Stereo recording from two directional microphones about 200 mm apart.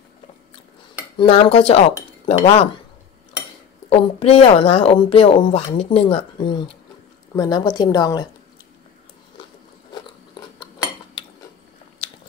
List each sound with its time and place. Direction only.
1.1 s a woman's voice: 30° left (ahead or behind)
3.9 s a woman's voice: 30° left (ahead or behind)
11.2 s dishes: 25° left (ahead or behind)
12.0 s biting: 30° left (ahead or behind)